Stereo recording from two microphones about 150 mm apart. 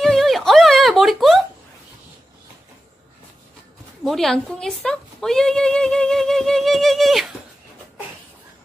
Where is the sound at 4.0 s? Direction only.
Centre (ahead or behind).